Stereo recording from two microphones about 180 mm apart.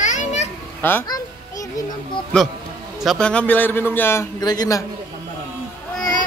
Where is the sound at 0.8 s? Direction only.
15° left (ahead or behind).